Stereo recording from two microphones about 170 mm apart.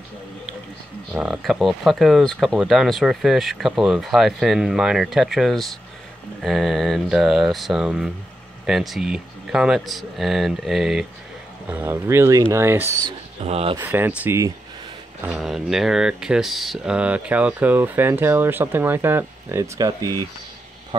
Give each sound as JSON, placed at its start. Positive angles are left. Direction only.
{"t": 1.1, "sound": "speech", "side_deg": 0}
{"t": 13.4, "sound": "speech", "side_deg": -35}
{"t": 13.7, "sound": "speech", "side_deg": -10}
{"t": 15.2, "sound": "speech", "side_deg": -5}